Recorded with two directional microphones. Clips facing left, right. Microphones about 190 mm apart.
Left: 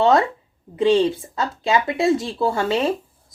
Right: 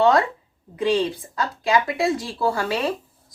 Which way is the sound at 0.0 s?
25° left (ahead or behind).